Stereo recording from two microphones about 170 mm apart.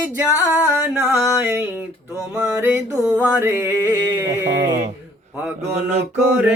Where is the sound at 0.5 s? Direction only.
10° right (ahead or behind).